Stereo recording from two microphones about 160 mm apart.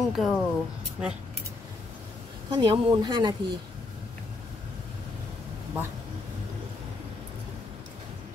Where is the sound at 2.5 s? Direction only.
25° right (ahead or behind).